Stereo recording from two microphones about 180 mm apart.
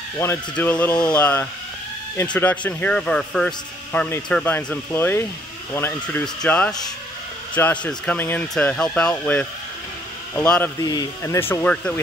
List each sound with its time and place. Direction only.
0.2 s speech: 10° left (ahead or behind)